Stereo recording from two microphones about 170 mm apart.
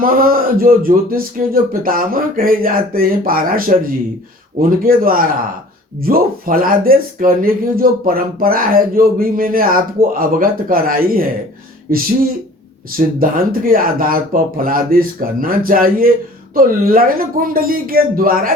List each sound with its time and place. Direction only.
0.0 s speech: 55° right (ahead or behind)
13.1 s speech: 55° right (ahead or behind)